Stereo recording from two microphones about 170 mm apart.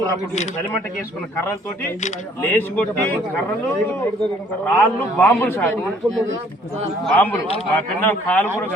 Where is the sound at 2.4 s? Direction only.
15° left (ahead or behind).